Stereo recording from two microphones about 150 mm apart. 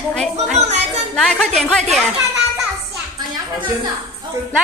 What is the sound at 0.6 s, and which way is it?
Speech, 50° right (ahead or behind).